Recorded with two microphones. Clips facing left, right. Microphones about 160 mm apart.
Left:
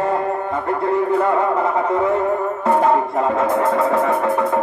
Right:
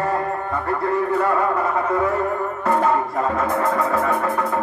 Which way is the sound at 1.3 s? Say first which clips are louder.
Left 3 dB; 25° left (ahead or behind).